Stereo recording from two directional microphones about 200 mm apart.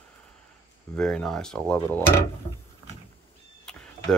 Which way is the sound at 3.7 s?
5° left (ahead or behind).